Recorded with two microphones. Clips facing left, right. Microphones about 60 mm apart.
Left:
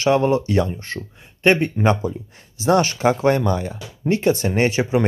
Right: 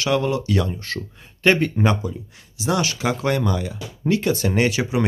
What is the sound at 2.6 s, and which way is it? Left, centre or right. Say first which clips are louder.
Speech: left 5 dB; left.